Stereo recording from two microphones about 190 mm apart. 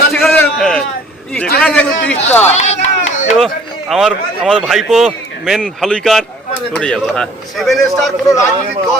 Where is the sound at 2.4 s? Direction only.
35° left (ahead or behind).